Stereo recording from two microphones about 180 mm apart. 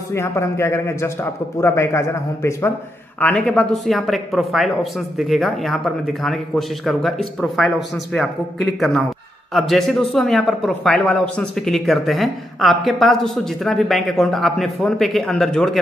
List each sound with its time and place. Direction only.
0.1 s a man's voice: 15° left (ahead or behind)